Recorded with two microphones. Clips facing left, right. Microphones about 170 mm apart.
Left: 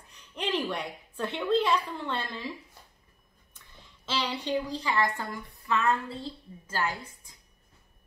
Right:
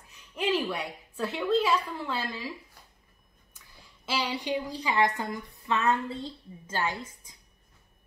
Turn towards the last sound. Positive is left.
turn(degrees=-20)  # may be behind; listen again after turning